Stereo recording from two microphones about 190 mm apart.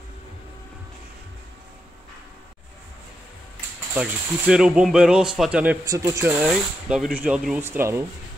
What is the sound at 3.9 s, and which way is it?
Speech, 5° right (ahead or behind).